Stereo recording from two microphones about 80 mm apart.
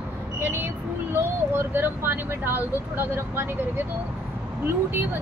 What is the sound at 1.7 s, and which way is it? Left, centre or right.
Speech, right.